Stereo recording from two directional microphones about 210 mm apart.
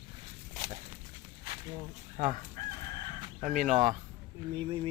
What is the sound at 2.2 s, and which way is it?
Speech, 35° right (ahead or behind).